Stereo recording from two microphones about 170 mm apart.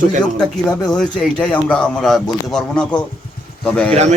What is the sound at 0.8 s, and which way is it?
A man's voice, 5° left (ahead or behind).